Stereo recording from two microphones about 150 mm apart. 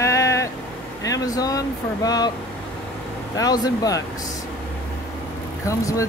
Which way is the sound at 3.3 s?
25° left (ahead or behind).